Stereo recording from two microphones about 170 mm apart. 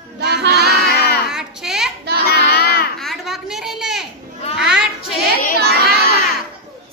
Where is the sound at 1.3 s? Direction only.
5° right (ahead or behind).